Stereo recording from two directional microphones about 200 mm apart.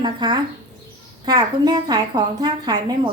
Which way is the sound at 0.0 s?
20° right (ahead or behind).